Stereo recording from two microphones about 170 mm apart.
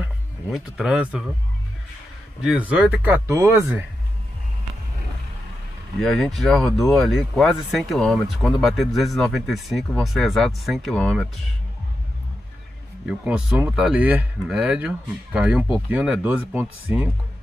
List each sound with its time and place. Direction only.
0.0 s a sound: 5° right (ahead or behind)
2.4 s speech: 5° right (ahead or behind)
5.9 s speech: centre (ahead or behind)
13.0 s speech: 5° right (ahead or behind)